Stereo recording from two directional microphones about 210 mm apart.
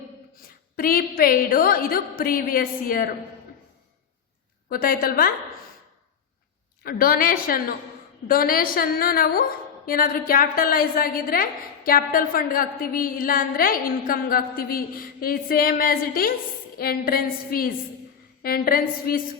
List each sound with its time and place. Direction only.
0.4 s a woman's voice: 45° left (ahead or behind)
4.7 s a woman's voice: 45° left (ahead or behind)
6.8 s a woman's voice: 45° left (ahead or behind)